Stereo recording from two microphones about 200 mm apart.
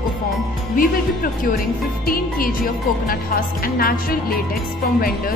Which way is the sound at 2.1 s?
45° left (ahead or behind).